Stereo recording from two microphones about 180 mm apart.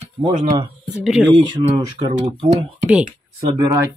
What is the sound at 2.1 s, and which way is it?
Speech, 45° right (ahead or behind).